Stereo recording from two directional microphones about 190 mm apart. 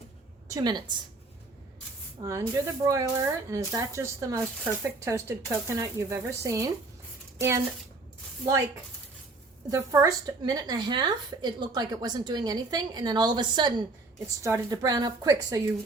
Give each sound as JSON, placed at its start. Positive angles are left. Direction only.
{"t": 0.4, "sound": "a woman's voice", "side_deg": -20}
{"t": 2.2, "sound": "speech", "side_deg": -15}
{"t": 9.6, "sound": "a woman's voice", "side_deg": -15}